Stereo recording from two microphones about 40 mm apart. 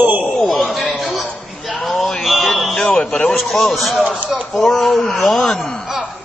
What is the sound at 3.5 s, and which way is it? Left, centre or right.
A man's voice, centre.